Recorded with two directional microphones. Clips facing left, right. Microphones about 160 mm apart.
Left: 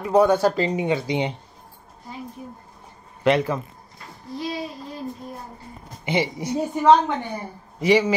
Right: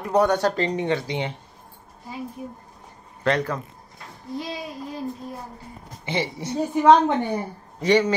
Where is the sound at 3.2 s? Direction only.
10° left (ahead or behind).